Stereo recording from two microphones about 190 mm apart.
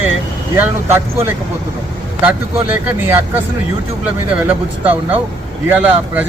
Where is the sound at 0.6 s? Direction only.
10° right (ahead or behind).